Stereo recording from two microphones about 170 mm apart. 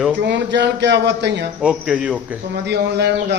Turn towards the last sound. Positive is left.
turn(degrees=-75)  # may be behind; listen again after turning